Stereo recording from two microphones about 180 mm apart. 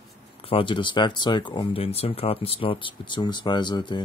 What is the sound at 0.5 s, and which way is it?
Speech, 30° left (ahead or behind).